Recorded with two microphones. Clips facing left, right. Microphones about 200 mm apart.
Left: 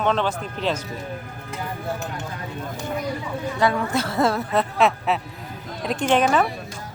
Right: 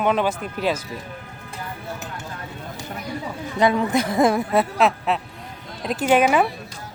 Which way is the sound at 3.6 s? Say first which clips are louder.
Right 4 dB; 20° right (ahead or behind).